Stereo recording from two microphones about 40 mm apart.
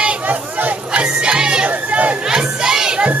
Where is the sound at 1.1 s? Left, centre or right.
Right.